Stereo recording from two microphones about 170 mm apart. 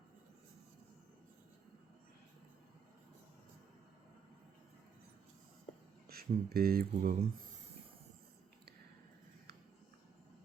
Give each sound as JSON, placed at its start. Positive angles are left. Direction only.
{"t": 6.1, "sound": "speech", "side_deg": -65}